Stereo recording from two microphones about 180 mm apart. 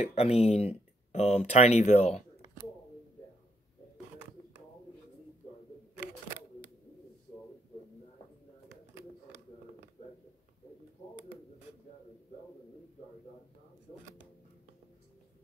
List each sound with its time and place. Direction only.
0.0 s speech: 35° left (ahead or behind)